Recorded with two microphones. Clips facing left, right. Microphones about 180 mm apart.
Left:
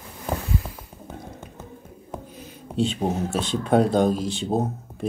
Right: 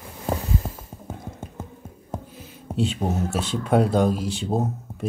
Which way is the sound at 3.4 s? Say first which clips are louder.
Left 1 dB; 5° right (ahead or behind).